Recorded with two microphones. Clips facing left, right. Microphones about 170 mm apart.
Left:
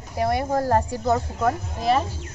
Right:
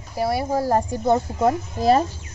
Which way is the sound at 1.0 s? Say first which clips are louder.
Right 3 dB; 25° right (ahead or behind).